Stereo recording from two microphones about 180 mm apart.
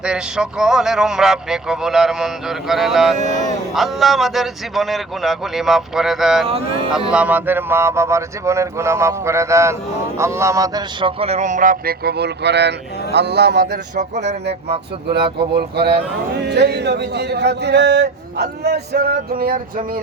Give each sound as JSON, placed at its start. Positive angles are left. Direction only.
{"t": 0.0, "sound": "a man's voice", "side_deg": -5}
{"t": 13.9, "sound": "a sound", "side_deg": -40}
{"t": 15.5, "sound": "a man's voice", "side_deg": -65}